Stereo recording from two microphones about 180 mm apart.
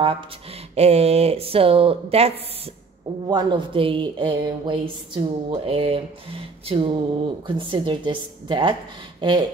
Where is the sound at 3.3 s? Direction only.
25° right (ahead or behind).